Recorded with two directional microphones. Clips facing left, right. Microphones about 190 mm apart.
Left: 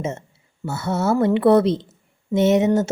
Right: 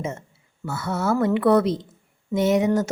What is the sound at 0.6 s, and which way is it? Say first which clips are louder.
Speech: left 3 dB; 25° left (ahead or behind).